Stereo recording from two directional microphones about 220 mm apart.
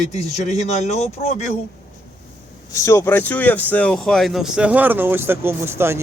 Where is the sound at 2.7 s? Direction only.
15° left (ahead or behind); by 6.0 s 10° right (ahead or behind).